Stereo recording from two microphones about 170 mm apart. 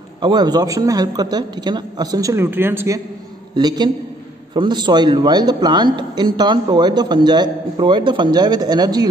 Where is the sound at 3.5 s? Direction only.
25° right (ahead or behind).